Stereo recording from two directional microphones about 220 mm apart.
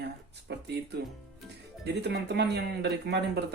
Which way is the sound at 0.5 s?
50° right (ahead or behind).